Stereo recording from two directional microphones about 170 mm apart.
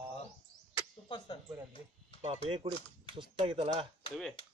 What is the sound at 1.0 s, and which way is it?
Speech, 30° left (ahead or behind).